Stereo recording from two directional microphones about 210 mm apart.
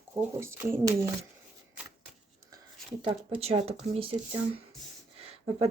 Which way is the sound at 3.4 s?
30° right (ahead or behind).